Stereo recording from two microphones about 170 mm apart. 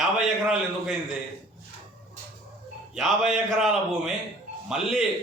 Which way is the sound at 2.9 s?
Centre (ahead or behind).